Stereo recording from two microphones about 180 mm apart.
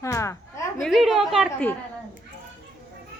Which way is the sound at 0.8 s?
Centre (ahead or behind).